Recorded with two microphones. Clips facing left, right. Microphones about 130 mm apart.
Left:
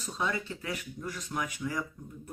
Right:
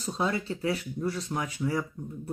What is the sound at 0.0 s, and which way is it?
Speech, 30° right (ahead or behind).